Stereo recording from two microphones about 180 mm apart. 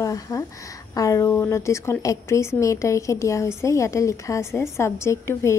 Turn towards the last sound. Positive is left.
turn(degrees=15)  # may be behind; listen again after turning